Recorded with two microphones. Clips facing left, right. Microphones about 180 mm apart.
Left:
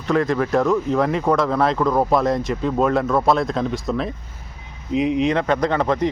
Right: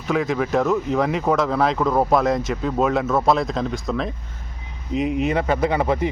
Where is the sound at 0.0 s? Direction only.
5° right (ahead or behind).